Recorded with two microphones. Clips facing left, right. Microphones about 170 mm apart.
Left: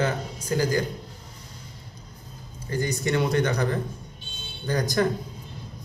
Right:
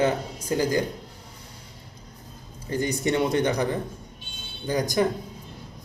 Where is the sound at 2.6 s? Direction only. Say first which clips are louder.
Right 2 dB; 20° right (ahead or behind).